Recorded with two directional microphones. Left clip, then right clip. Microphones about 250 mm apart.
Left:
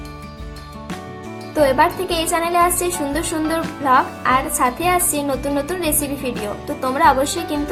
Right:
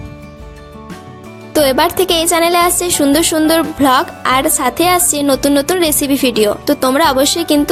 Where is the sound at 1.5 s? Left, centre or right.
Right.